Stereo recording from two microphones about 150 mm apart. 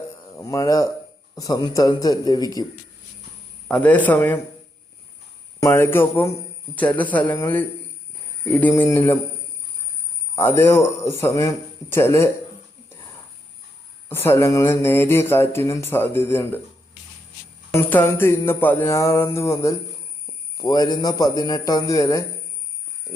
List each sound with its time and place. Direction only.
0.3 s speech: 20° left (ahead or behind)
3.7 s speech: 10° left (ahead or behind)
5.5 s speech: 20° left (ahead or behind)
10.3 s speech: 15° left (ahead or behind)
14.1 s speech: 15° left (ahead or behind)
17.7 s speech: 15° left (ahead or behind)